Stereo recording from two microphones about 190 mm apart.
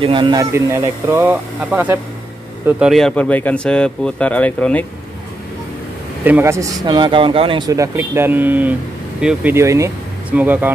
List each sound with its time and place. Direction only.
0.0 s speech: 25° right (ahead or behind); by 4.8 s 10° left (ahead or behind)
6.2 s speech: 10° right (ahead or behind)